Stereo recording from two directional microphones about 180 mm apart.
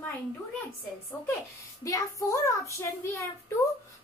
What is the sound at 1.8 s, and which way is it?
A woman's voice, 20° left (ahead or behind).